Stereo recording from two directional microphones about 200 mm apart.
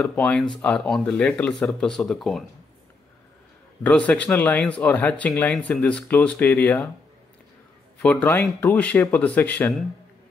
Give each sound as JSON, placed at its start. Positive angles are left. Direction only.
{"t": 0.0, "sound": "speech", "side_deg": 5}
{"t": 3.8, "sound": "speech", "side_deg": 5}
{"t": 8.0, "sound": "speech", "side_deg": 5}